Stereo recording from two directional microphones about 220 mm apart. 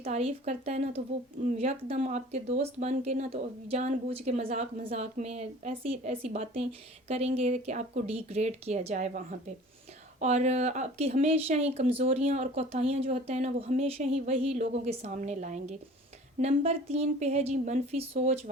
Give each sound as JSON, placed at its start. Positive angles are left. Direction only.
{"t": 0.0, "sound": "speech", "side_deg": -25}